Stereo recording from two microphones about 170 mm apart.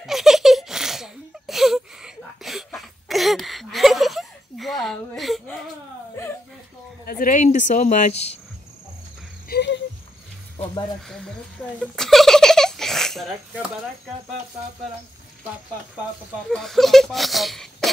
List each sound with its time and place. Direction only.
0.0 s giggle: centre (ahead or behind)
7.1 s speech: 55° left (ahead or behind)
9.5 s a sound: 80° left
11.1 s speech: 5° left (ahead or behind)
11.8 s a sound: centre (ahead or behind)
16.4 s speech: centre (ahead or behind)